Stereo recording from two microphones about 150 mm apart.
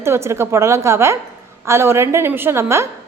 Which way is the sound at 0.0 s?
15° right (ahead or behind).